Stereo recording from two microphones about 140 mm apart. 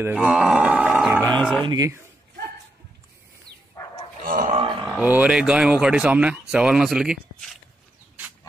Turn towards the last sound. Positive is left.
turn(degrees=0)  # may be behind; listen again after turning